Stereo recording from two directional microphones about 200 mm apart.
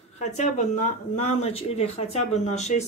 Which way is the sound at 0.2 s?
35° left (ahead or behind).